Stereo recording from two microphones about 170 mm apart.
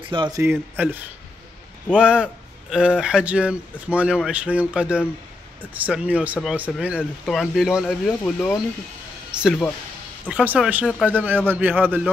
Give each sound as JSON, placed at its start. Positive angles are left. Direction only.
{"t": 0.1, "sound": "a man's voice", "side_deg": -25}
{"t": 0.4, "sound": "speech", "side_deg": -10}
{"t": 2.0, "sound": "speech", "side_deg": -5}
{"t": 10.2, "sound": "speech", "side_deg": -10}